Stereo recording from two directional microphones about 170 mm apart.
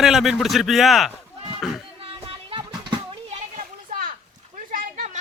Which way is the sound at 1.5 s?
Centre (ahead or behind).